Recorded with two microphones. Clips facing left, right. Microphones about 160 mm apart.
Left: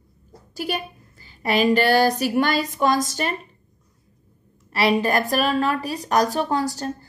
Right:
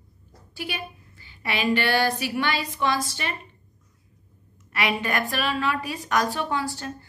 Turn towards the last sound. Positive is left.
turn(degrees=40)  # may be behind; listen again after turning